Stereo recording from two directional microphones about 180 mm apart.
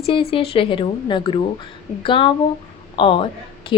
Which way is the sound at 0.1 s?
30° left (ahead or behind).